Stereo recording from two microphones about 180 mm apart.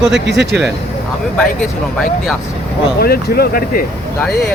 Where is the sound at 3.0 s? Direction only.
60° left (ahead or behind).